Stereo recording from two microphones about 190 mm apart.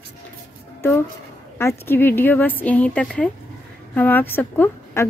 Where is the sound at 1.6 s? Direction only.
15° left (ahead or behind).